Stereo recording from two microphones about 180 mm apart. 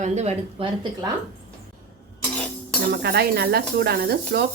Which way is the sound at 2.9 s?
65° right (ahead or behind).